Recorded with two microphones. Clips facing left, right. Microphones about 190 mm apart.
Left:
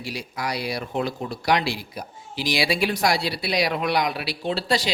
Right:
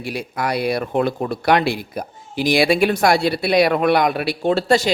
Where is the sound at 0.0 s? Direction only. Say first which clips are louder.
Right 6 dB; 55° right (ahead or behind).